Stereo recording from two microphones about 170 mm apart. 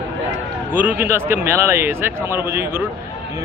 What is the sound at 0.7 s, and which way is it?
A man's voice, 10° right (ahead or behind).